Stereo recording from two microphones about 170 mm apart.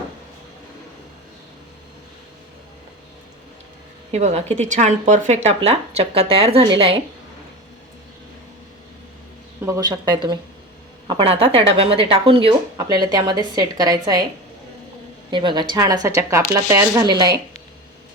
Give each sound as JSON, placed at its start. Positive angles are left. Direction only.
{"t": 4.1, "sound": "speech", "side_deg": -40}
{"t": 9.6, "sound": "a woman's voice", "side_deg": -20}
{"t": 12.7, "sound": "a woman's voice", "side_deg": -25}
{"t": 15.3, "sound": "a woman's voice", "side_deg": -30}